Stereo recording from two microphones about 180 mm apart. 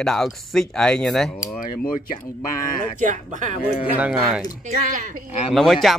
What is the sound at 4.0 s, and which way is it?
Speech, 5° right (ahead or behind).